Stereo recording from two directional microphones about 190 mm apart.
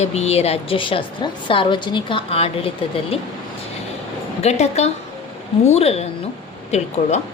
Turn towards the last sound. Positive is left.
turn(degrees=35)  # may be behind; listen again after turning